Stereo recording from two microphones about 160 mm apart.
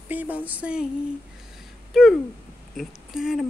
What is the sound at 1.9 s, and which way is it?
Speech, centre (ahead or behind).